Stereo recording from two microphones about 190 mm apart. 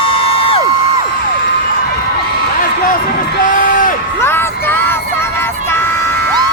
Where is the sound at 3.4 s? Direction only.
45° left (ahead or behind).